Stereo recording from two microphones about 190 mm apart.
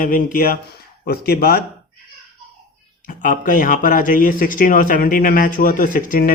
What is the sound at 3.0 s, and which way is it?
A man's voice, 45° left (ahead or behind).